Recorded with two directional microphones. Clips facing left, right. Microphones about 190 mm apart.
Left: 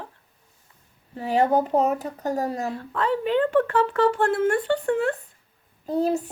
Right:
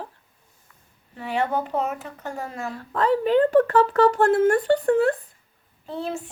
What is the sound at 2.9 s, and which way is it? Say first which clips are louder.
Speech: right 4 dB; 40° right (ahead or behind).